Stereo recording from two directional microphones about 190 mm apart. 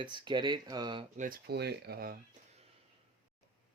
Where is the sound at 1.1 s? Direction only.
45° right (ahead or behind).